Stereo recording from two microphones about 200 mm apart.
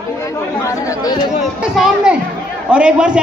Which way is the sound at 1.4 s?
5° right (ahead or behind).